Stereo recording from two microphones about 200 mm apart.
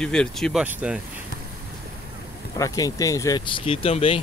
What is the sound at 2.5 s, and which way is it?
Speech, 15° left (ahead or behind).